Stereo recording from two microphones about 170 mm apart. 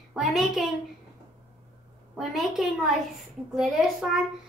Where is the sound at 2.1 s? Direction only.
Centre (ahead or behind).